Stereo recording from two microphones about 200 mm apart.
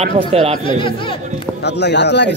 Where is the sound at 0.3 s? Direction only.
30° right (ahead or behind).